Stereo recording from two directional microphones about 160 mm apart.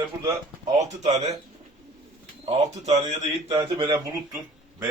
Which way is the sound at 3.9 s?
15° right (ahead or behind).